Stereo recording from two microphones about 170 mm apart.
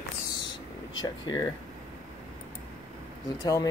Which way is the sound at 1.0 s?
25° left (ahead or behind).